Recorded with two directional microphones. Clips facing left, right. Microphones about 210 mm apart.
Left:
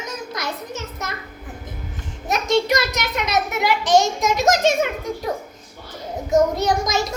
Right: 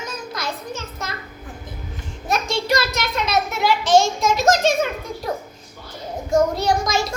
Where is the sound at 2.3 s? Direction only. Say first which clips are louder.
Left 2 dB; 20° left (ahead or behind).